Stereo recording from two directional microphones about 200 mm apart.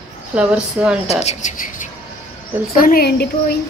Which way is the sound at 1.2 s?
35° left (ahead or behind).